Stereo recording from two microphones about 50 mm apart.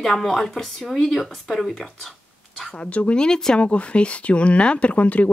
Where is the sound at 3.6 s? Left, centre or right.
Left.